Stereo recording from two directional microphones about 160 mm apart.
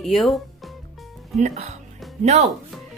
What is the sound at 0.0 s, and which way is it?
Speech, centre (ahead or behind).